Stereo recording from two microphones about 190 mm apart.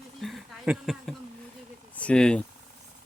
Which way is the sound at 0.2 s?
Centre (ahead or behind).